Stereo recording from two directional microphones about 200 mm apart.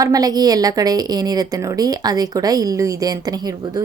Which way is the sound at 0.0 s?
20° right (ahead or behind).